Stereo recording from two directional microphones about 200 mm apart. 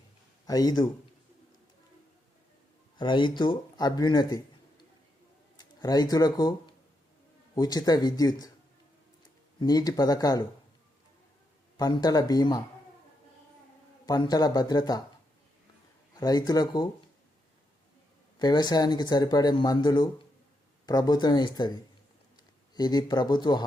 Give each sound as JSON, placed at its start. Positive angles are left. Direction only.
{"t": 0.4, "sound": "a man's voice", "side_deg": 20}
{"t": 3.0, "sound": "speech", "side_deg": 25}
{"t": 9.6, "sound": "speech", "side_deg": 20}
{"t": 11.8, "sound": "speech", "side_deg": 20}
{"t": 14.1, "sound": "speech", "side_deg": 20}
{"t": 16.2, "sound": "speech", "side_deg": 20}
{"t": 18.3, "sound": "speech", "side_deg": 20}